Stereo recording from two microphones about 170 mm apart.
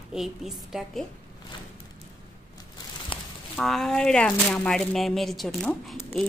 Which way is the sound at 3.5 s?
Centre (ahead or behind).